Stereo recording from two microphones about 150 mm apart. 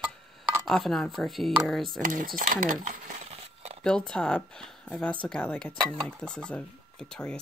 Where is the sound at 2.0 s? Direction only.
65° right (ahead or behind).